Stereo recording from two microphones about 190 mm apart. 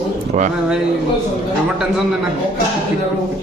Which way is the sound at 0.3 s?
35° right (ahead or behind).